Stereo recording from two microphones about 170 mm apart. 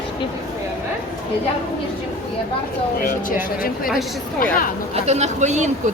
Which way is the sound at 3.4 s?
55° left (ahead or behind).